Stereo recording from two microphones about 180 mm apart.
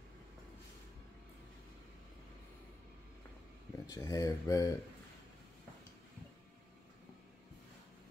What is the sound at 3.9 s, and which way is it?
Speech, 20° left (ahead or behind).